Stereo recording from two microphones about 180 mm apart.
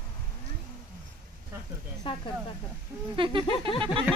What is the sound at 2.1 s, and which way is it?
Speech, 30° left (ahead or behind).